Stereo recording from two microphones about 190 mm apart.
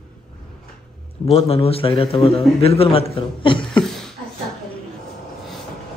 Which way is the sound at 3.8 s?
Centre (ahead or behind).